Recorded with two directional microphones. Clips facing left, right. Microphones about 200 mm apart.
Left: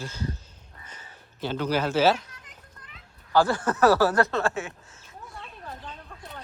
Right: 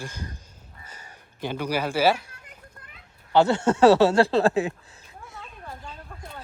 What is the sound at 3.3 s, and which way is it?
Speech, 25° right (ahead or behind).